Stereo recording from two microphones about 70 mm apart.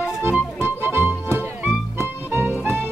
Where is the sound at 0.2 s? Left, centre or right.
Right.